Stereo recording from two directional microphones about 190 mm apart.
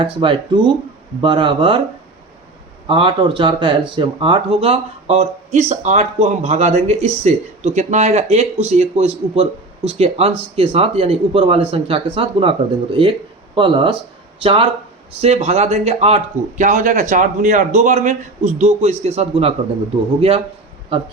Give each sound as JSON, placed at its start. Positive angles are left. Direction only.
{"t": 0.0, "sound": "speech", "side_deg": -25}
{"t": 2.8, "sound": "speech", "side_deg": -25}